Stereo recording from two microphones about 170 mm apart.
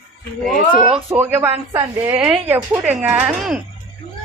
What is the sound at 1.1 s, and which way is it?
Speech, 10° right (ahead or behind).